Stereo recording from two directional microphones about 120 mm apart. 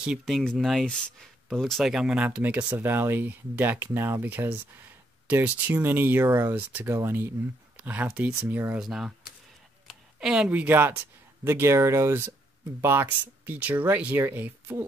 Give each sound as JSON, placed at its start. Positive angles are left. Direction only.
{"t": 0.2, "sound": "speech", "side_deg": 5}
{"t": 8.8, "sound": "speech", "side_deg": 0}